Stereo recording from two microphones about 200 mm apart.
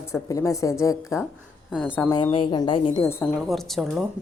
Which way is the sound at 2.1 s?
25° left (ahead or behind).